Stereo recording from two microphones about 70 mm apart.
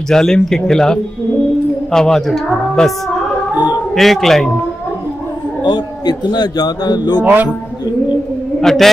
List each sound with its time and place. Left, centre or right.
0.1 s speech: centre
3.9 s speech: centre
6.0 s a man's voice: left
8.5 s a man's voice: centre